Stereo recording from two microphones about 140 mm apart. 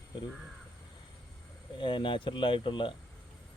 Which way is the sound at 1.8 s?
35° left (ahead or behind).